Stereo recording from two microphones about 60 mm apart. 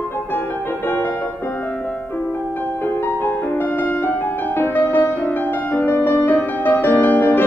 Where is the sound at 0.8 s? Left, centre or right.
Left.